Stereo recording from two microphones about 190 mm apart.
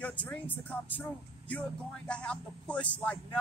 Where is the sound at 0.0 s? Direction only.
5° left (ahead or behind).